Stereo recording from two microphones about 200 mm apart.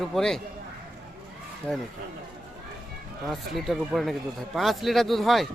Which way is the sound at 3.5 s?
Centre (ahead or behind).